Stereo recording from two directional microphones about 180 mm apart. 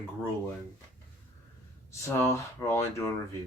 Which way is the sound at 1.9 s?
15° left (ahead or behind).